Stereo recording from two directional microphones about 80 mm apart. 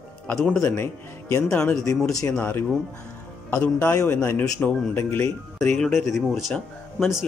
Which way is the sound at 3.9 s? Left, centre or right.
Left.